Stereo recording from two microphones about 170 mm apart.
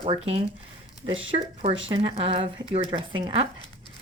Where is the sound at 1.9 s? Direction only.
35° right (ahead or behind).